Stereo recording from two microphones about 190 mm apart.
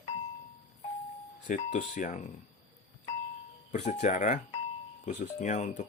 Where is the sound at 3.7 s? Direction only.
40° left (ahead or behind).